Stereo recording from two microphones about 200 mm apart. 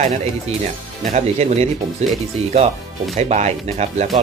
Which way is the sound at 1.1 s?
30° right (ahead or behind).